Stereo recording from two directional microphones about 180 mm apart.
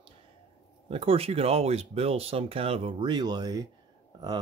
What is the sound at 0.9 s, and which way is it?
Speech, 30° right (ahead or behind).